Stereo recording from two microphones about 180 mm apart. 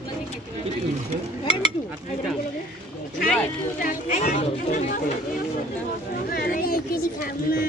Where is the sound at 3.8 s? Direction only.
45° left (ahead or behind).